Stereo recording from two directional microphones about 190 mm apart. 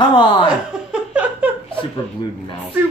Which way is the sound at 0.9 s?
10° right (ahead or behind).